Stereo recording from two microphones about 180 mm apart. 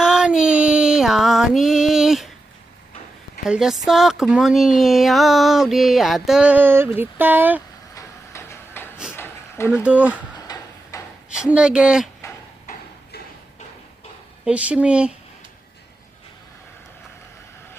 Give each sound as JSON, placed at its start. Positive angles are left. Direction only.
{"t": 0.0, "sound": "female singing", "side_deg": -5}
{"t": 3.4, "sound": "speech", "side_deg": -5}
{"t": 7.9, "sound": "a sound", "side_deg": 15}
{"t": 9.8, "sound": "speech", "side_deg": -10}
{"t": 10.3, "sound": "tick-tock", "side_deg": 20}
{"t": 11.3, "sound": "speech", "side_deg": -5}
{"t": 14.4, "sound": "speech", "side_deg": -5}